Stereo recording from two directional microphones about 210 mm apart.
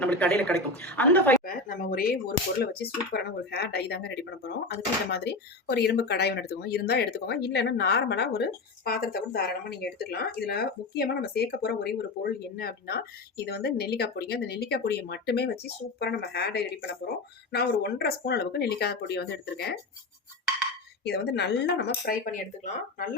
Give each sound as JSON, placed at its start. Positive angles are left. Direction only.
{"t": 0.0, "sound": "a woman's voice", "side_deg": 5}
{"t": 1.5, "sound": "speech", "side_deg": 40}
{"t": 21.0, "sound": "speech", "side_deg": 55}
{"t": 22.0, "sound": "speech", "side_deg": 40}